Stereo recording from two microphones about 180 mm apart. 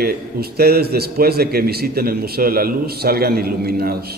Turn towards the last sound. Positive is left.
turn(degrees=-60)  # may be behind; listen again after turning